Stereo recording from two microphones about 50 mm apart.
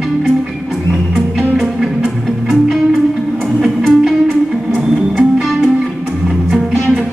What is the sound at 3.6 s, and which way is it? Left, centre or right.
Music, centre.